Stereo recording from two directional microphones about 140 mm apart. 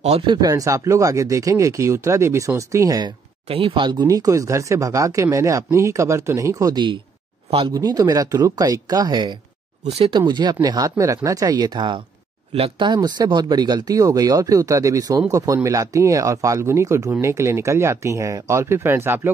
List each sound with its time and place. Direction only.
0.3 s speech: 25° right (ahead or behind)
3.4 s speech: 40° right (ahead or behind)
9.9 s speech: 45° right (ahead or behind)
10.2 s speech: 30° right (ahead or behind); by 19.3 s 15° right (ahead or behind)